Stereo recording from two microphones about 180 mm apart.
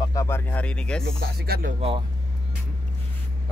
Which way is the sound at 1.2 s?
60° right (ahead or behind).